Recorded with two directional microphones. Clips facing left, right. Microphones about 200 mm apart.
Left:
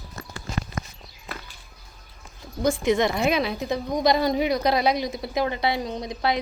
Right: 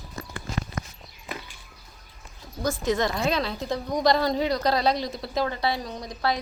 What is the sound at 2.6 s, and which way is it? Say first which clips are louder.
A woman's voice: left 4 dB; 15° left (ahead or behind).